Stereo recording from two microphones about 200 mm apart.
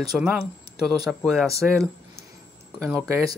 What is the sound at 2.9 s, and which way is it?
Speech, 15° right (ahead or behind).